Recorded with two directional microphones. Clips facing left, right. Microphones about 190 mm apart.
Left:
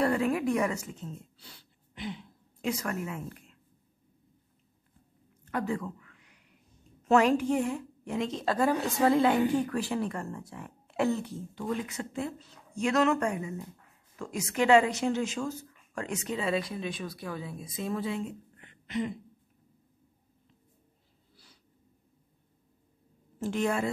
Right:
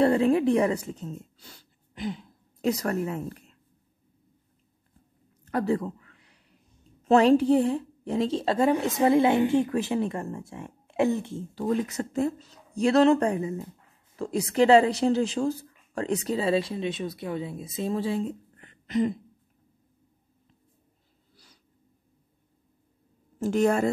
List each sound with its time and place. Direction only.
0.0 s speech: 30° right (ahead or behind)
5.4 s a sound: 35° right (ahead or behind)
7.1 s a woman's voice: 35° right (ahead or behind)
11.3 s a woman's voice: 35° right (ahead or behind)
23.4 s a woman's voice: 45° right (ahead or behind)